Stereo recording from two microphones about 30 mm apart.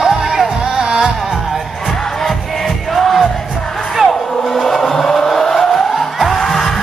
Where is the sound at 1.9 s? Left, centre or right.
Centre.